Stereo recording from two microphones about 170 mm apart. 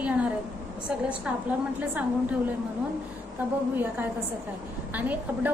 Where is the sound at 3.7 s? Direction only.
10° right (ahead or behind).